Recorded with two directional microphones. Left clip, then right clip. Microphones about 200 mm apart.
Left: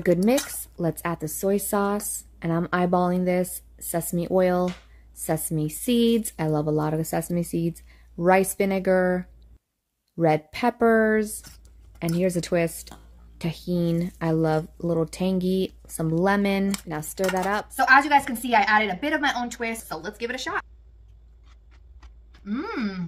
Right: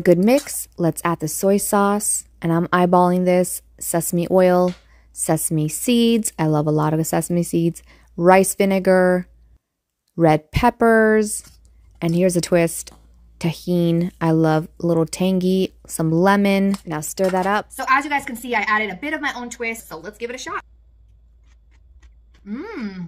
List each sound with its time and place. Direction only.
0.0 s a woman's voice: 35° right (ahead or behind)
17.7 s a woman's voice: 10° left (ahead or behind)
22.4 s a woman's voice: 15° left (ahead or behind)